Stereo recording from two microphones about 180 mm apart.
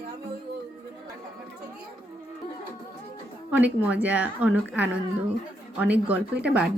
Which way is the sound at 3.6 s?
10° right (ahead or behind).